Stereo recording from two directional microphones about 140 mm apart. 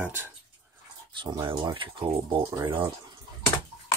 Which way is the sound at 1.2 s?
35° right (ahead or behind).